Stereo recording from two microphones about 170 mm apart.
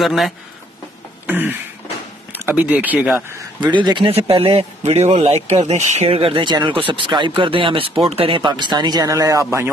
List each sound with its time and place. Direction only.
0.0 s speech: centre (ahead or behind)
1.2 s throat clearing: 10° right (ahead or behind)
2.3 s speech: 10° right (ahead or behind)
3.6 s a man's voice: 25° right (ahead or behind)